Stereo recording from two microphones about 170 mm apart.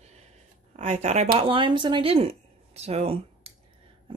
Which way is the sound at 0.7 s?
40° right (ahead or behind).